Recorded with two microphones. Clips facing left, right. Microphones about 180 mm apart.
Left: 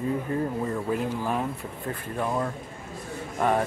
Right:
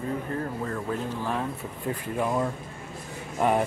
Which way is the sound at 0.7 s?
10° left (ahead or behind).